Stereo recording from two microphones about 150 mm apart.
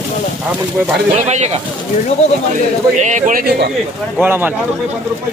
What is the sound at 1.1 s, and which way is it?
Speech, 50° right (ahead or behind).